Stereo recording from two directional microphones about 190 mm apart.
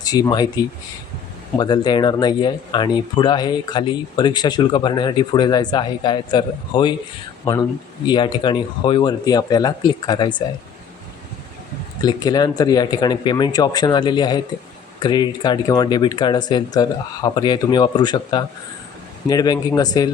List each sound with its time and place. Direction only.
0.0 s speech: 20° left (ahead or behind)
12.0 s speech: 20° left (ahead or behind)